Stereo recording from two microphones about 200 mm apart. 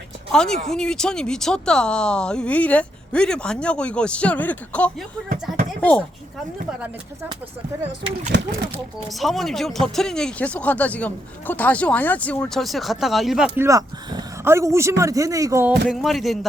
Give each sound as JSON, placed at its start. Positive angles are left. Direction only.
{"t": 0.3, "sound": "speech", "side_deg": 5}
{"t": 8.3, "sound": "speech", "side_deg": -55}
{"t": 9.0, "sound": "speech", "side_deg": 0}
{"t": 13.6, "sound": "speech", "side_deg": -15}
{"t": 15.9, "sound": "speech", "side_deg": 0}